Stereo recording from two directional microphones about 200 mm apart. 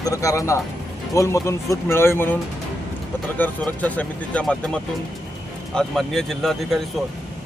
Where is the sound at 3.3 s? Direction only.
10° left (ahead or behind).